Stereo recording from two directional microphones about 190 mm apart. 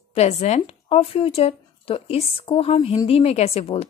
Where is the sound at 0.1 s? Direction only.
35° left (ahead or behind).